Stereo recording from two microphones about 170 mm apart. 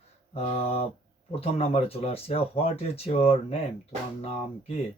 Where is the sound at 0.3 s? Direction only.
35° left (ahead or behind).